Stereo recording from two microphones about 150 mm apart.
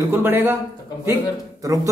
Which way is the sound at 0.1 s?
15° right (ahead or behind).